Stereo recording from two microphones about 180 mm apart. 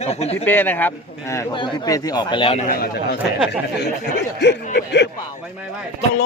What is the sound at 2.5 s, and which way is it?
Speech, 55° left (ahead or behind).